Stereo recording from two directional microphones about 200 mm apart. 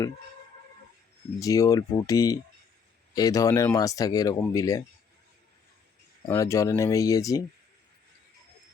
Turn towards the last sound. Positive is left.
turn(degrees=15)  # may be behind; listen again after turning